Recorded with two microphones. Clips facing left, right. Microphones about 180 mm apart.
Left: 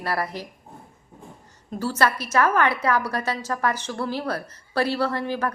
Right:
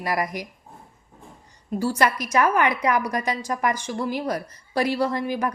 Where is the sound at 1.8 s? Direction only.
15° right (ahead or behind).